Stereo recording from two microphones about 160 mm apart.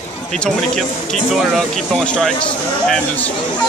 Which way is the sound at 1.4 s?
Centre (ahead or behind).